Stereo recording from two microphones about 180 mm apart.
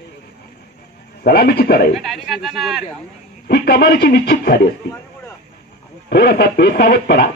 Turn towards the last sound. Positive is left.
turn(degrees=60)  # may be behind; listen again after turning